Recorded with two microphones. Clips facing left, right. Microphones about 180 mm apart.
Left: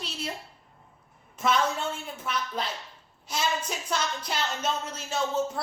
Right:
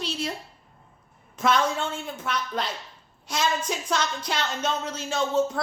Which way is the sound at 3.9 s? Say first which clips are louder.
Right 2 dB; 90° right.